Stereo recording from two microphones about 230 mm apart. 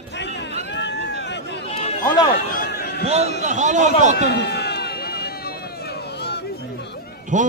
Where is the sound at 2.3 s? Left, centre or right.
Left.